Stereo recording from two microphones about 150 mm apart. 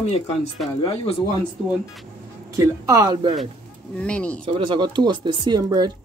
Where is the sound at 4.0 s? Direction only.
10° left (ahead or behind).